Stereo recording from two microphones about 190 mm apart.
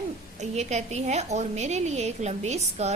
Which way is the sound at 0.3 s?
35° right (ahead or behind).